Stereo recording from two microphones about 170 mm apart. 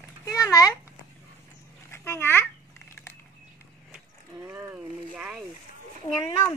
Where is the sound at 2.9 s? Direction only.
15° left (ahead or behind).